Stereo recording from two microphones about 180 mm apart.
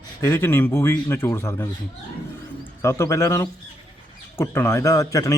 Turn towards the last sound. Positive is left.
turn(degrees=20)  # may be behind; listen again after turning